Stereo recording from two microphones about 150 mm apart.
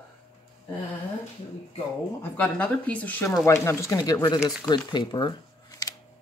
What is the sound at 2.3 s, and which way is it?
Speech, 10° left (ahead or behind).